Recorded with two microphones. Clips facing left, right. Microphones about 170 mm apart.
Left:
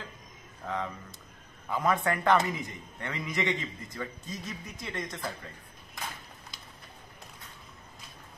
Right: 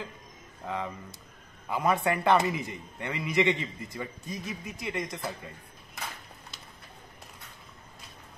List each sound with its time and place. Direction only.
0.7 s a man's voice: 10° right (ahead or behind)
5.0 s speech: centre (ahead or behind)